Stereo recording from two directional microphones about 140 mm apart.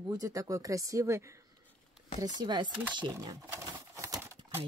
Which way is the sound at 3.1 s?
20° right (ahead or behind).